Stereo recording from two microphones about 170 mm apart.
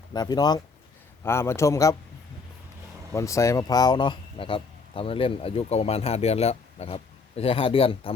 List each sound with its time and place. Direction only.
0.1 s a man's voice: 25° left (ahead or behind)
3.1 s speech: 15° left (ahead or behind)